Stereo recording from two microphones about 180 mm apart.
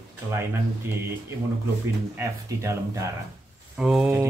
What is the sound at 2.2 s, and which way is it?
Speech, 15° right (ahead or behind).